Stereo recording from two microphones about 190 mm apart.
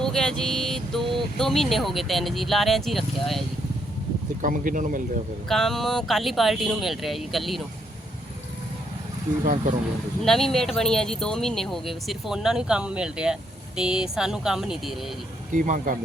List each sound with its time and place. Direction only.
0.0 s speech: 5° left (ahead or behind)
4.4 s speech: 45° right (ahead or behind)
5.5 s speech: centre (ahead or behind)
9.4 s speech: 45° right (ahead or behind)
10.2 s speech: centre (ahead or behind)
15.5 s speech: 45° right (ahead or behind)